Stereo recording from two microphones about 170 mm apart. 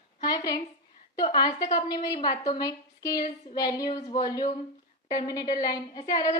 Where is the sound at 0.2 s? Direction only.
25° left (ahead or behind).